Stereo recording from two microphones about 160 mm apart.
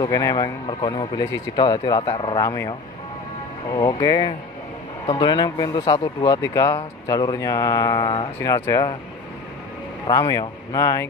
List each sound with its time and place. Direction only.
0.0 s speech: 25° left (ahead or behind)
2.4 s speech: 20° left (ahead or behind)
4.0 s speech: 25° left (ahead or behind)
10.0 s speech: 25° left (ahead or behind)